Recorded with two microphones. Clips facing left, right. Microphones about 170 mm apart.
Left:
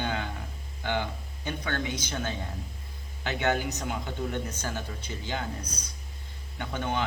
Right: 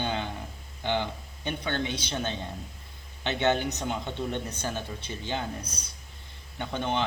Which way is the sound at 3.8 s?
25° right (ahead or behind).